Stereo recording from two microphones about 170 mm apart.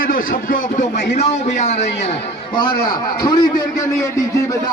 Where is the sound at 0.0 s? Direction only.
55° left (ahead or behind).